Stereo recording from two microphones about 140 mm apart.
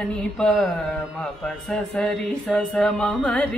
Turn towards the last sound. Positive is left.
turn(degrees=5)  # may be behind; listen again after turning